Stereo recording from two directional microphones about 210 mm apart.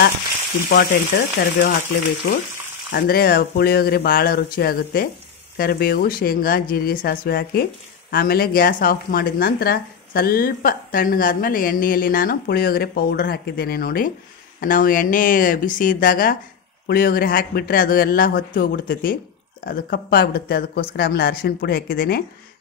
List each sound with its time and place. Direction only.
0.7 s speech: 45° left (ahead or behind)
2.9 s speech: 45° left (ahead or behind)